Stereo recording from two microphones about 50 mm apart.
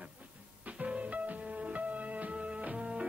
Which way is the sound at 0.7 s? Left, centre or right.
Right.